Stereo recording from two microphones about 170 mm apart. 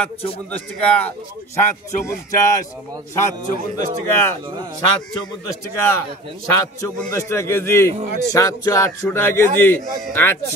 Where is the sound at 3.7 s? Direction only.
15° left (ahead or behind).